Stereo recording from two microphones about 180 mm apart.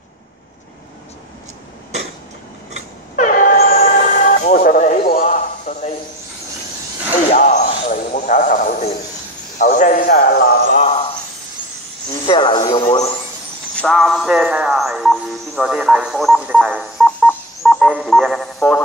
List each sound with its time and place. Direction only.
3.2 s train: 45° left (ahead or behind)
7.2 s a man's voice: 40° left (ahead or behind); by 10.8 s 55° left (ahead or behind)
10.8 s a sound: 30° left (ahead or behind)
12.3 s speech: 25° left (ahead or behind)
13.7 s speech: centre (ahead or behind)
17.6 s telephone dialing: 5° right (ahead or behind)